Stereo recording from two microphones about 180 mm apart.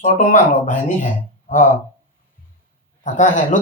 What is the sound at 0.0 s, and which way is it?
Speech, 45° left (ahead or behind).